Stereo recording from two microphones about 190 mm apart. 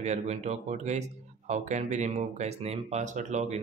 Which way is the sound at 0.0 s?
35° right (ahead or behind).